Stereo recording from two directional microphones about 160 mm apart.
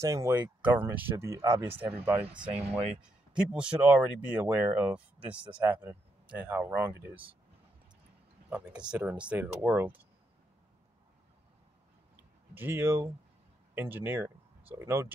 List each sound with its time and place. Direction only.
0.0 s speech: 20° right (ahead or behind)
8.5 s speech: 5° right (ahead or behind)
12.5 s speech: 15° right (ahead or behind)